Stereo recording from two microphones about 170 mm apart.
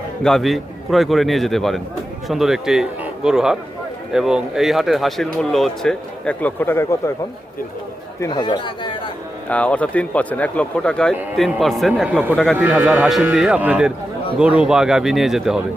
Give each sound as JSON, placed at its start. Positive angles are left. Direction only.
{"t": 0.2, "sound": "a man's voice", "side_deg": 5}
{"t": 8.2, "sound": "speech", "side_deg": 25}
{"t": 9.5, "sound": "a man's voice", "side_deg": 10}